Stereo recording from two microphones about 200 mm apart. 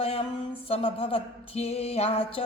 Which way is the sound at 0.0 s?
30° left (ahead or behind).